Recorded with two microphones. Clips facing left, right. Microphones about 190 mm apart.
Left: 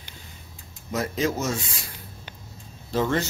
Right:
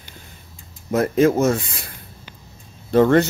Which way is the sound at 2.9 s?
60° right (ahead or behind).